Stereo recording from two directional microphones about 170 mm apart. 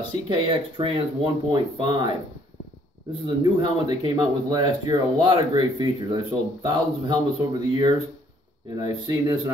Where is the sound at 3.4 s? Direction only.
25° right (ahead or behind).